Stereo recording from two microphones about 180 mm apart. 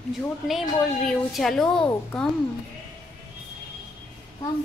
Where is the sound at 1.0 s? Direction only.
Centre (ahead or behind).